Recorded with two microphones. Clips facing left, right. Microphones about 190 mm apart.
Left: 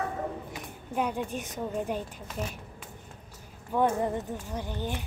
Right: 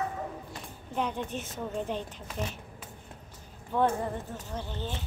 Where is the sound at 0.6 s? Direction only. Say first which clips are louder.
Left 1 dB; 10° left (ahead or behind).